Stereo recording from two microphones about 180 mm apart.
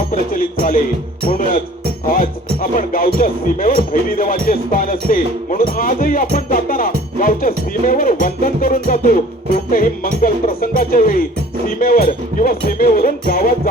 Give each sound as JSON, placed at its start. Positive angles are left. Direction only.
{"t": 1.3, "sound": "speech", "side_deg": 50}